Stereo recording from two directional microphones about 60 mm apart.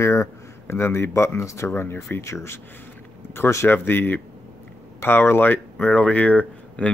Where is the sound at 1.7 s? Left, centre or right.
Left.